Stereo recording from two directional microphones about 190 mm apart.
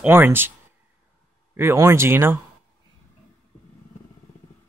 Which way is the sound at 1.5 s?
10° right (ahead or behind).